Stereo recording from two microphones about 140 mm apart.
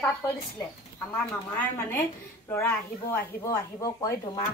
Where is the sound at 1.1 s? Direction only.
10° left (ahead or behind).